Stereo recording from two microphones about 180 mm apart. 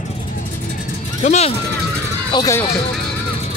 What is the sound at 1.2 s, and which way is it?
Speech, 40° left (ahead or behind).